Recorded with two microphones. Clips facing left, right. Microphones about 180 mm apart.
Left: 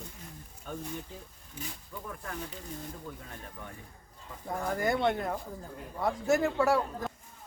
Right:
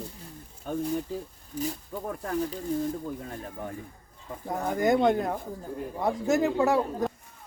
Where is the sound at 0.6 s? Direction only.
35° right (ahead or behind).